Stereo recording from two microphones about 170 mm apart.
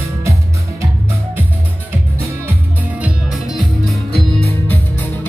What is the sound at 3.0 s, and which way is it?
Music, centre (ahead or behind).